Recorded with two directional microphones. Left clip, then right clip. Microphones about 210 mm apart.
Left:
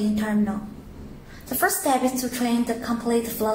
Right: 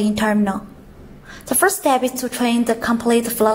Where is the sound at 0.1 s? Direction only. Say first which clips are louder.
Right 7 dB; 35° right (ahead or behind).